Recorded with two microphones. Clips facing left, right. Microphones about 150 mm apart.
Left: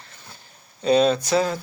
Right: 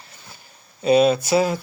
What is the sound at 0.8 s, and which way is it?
Speech, 10° right (ahead or behind).